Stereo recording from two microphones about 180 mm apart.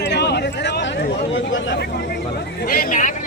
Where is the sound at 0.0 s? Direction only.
70° left (ahead or behind).